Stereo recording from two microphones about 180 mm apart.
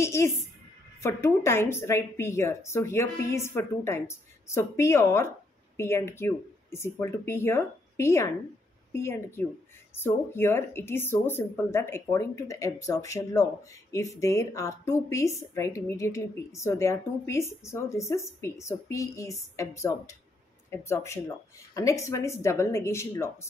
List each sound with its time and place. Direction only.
0.0 s speech: 15° left (ahead or behind)